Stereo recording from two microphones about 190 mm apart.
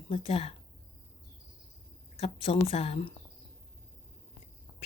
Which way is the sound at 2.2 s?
30° left (ahead or behind).